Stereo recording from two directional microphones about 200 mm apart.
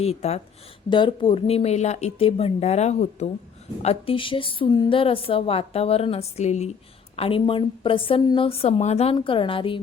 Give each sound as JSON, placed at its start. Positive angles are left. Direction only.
{"t": 0.0, "sound": "a woman's voice", "side_deg": 30}